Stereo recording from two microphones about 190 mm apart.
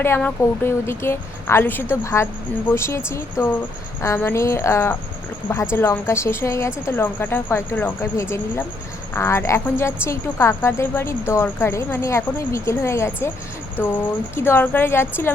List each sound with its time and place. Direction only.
0.0 s a woman's voice: 10° left (ahead or behind)